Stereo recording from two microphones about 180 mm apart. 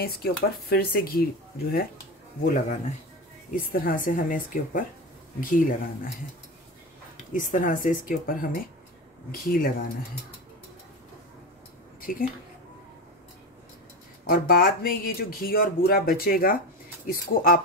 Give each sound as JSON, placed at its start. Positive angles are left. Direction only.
{"t": 0.0, "sound": "speech", "side_deg": 60}
{"t": 2.4, "sound": "speech", "side_deg": 45}
{"t": 7.3, "sound": "speech", "side_deg": 45}
{"t": 12.0, "sound": "a woman's voice", "side_deg": 50}
{"t": 14.2, "sound": "speech", "side_deg": 55}